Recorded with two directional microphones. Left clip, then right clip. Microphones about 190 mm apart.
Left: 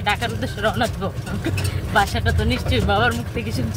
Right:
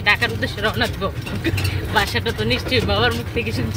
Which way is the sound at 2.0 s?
15° left (ahead or behind).